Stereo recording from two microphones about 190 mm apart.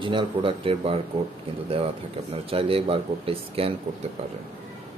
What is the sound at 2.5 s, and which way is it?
Speech, 30° right (ahead or behind).